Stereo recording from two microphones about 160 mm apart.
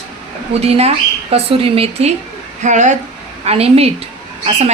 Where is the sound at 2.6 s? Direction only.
50° right (ahead or behind).